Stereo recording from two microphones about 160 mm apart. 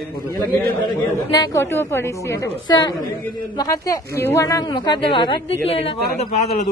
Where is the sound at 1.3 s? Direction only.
20° left (ahead or behind); by 6.7 s 40° left (ahead or behind).